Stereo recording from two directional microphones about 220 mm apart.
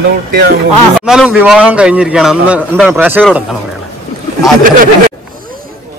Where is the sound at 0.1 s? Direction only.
45° right (ahead or behind).